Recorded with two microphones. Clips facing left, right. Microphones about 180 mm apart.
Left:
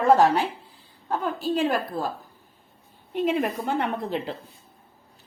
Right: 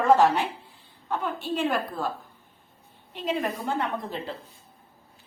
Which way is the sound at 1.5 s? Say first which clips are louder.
Left 3 dB; 40° left (ahead or behind).